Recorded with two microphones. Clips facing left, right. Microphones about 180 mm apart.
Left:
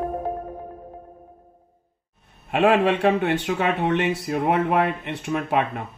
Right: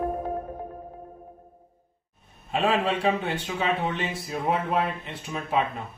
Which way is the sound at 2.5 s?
70° left (ahead or behind).